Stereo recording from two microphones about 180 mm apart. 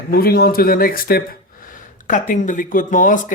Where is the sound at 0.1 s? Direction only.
60° left (ahead or behind).